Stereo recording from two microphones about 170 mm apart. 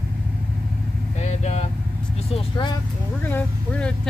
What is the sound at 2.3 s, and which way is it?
Speech, 30° left (ahead or behind).